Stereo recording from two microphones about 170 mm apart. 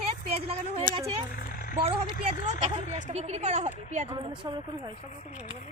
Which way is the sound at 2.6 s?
40° right (ahead or behind).